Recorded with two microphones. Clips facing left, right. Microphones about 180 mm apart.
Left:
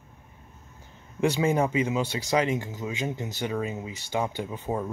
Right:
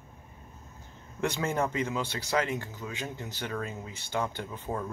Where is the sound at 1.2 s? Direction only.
10° left (ahead or behind).